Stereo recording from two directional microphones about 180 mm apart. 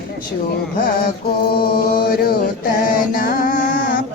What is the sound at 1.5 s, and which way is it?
Chant, 60° left (ahead or behind).